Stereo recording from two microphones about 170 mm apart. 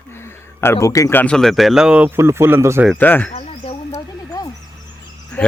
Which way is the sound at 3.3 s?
35° left (ahead or behind).